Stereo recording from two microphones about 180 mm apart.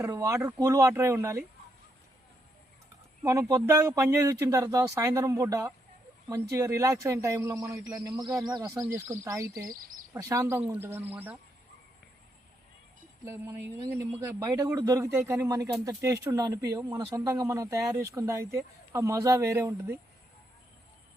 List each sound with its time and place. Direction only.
0.0 s speech: 15° right (ahead or behind)
3.2 s speech: 15° right (ahead or behind)
13.2 s speech: 15° right (ahead or behind)